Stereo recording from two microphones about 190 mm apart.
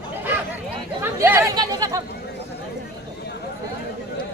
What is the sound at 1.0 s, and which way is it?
Speech, 15° right (ahead or behind).